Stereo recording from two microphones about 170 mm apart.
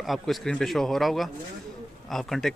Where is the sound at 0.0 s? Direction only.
Centre (ahead or behind).